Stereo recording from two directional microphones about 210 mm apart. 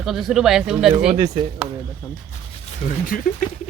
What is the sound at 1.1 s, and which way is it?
Speech, 25° right (ahead or behind).